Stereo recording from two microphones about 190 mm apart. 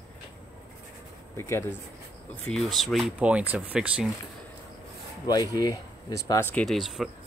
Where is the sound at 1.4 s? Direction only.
15° left (ahead or behind).